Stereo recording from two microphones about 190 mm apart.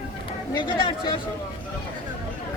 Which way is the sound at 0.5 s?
25° left (ahead or behind).